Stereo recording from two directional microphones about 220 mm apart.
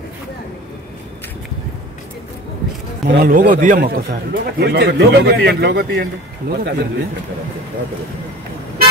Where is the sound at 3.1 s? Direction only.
40° right (ahead or behind).